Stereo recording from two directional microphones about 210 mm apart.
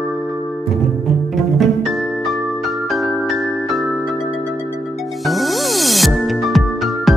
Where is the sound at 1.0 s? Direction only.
Centre (ahead or behind).